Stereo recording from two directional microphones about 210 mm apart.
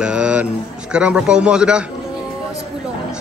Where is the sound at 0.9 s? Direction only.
5° right (ahead or behind).